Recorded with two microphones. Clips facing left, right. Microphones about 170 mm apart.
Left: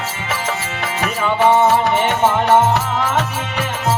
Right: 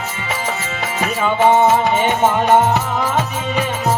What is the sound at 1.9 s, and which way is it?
Music, 15° right (ahead or behind).